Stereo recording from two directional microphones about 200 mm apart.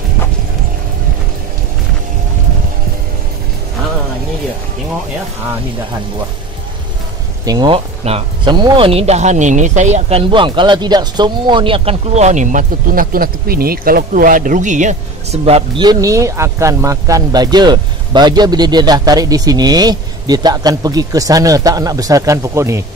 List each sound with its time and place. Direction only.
7.4 s speech: 20° right (ahead or behind); by 15.0 s 40° right (ahead or behind)
15.4 s speech: 30° right (ahead or behind)